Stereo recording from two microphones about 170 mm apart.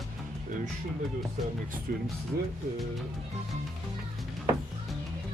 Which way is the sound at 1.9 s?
60° right (ahead or behind).